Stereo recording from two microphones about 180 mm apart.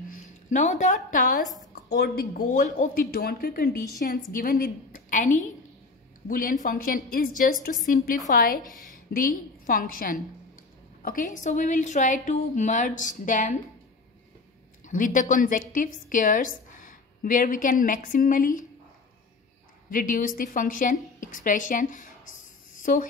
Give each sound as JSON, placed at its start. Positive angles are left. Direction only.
{"t": 0.1, "sound": "speech", "side_deg": 40}
{"t": 1.8, "sound": "a woman's voice", "side_deg": 65}
{"t": 14.9, "sound": "a woman's voice", "side_deg": 45}
{"t": 19.9, "sound": "a woman's voice", "side_deg": 50}